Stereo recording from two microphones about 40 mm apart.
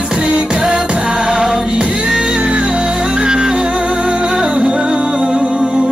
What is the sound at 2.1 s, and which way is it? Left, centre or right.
Music, centre.